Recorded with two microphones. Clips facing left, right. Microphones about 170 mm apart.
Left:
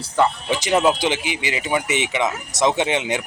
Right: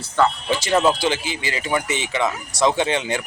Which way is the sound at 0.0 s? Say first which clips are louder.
Even; 15° left (ahead or behind).